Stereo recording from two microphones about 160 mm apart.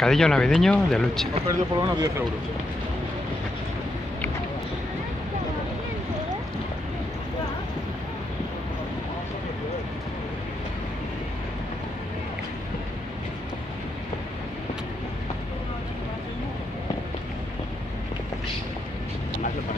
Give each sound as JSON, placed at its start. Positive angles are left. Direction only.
{"t": 0.0, "sound": "speech", "side_deg": 5}
{"t": 1.5, "sound": "speech", "side_deg": -20}